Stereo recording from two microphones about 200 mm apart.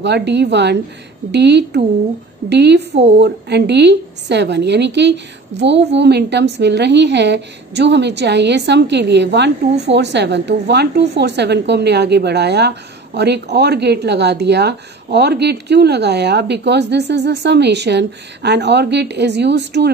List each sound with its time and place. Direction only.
0.0 s a woman's voice: 60° right (ahead or behind)